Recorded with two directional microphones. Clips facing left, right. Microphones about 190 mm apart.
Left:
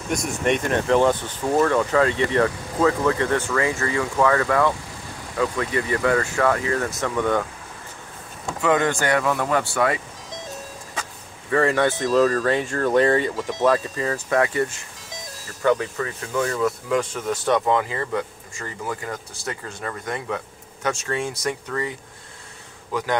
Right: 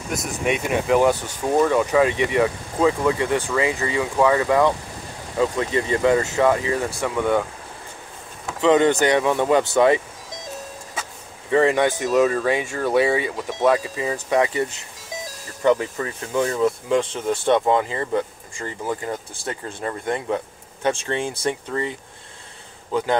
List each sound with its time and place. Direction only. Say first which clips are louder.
0.1 s speech: left 2 dB; centre (ahead or behind)
8.5 s speech: right 4 dB; 20° right (ahead or behind)
11.5 s speech: right 2 dB; 15° right (ahead or behind)